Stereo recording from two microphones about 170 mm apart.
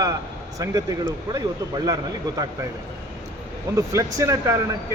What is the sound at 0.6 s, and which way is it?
Speech, 20° right (ahead or behind).